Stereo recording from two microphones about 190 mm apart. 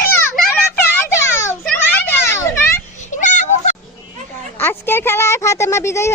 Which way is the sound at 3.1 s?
40° left (ahead or behind).